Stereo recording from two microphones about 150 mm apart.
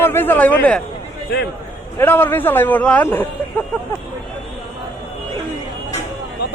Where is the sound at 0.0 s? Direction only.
15° left (ahead or behind).